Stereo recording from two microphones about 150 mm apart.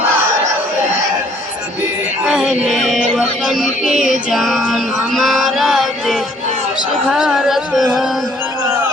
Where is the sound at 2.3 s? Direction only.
Centre (ahead or behind).